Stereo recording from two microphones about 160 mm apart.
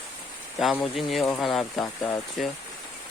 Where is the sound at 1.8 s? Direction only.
20° left (ahead or behind).